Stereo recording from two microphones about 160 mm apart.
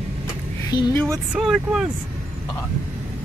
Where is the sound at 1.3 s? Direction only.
5° right (ahead or behind).